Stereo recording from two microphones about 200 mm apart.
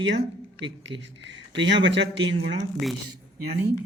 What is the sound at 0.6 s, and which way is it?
Speech, 65° right (ahead or behind).